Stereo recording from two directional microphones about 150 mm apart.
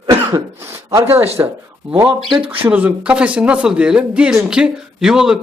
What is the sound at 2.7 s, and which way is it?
Speech, 10° right (ahead or behind).